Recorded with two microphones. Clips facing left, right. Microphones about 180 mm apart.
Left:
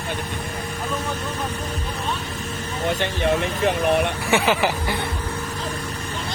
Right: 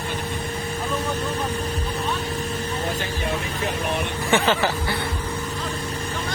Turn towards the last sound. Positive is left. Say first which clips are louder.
# left 1 dB
turn(degrees=10)  # may be behind; listen again after turning